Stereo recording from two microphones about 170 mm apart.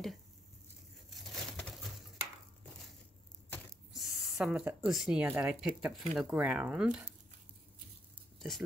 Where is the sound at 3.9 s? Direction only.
Centre (ahead or behind).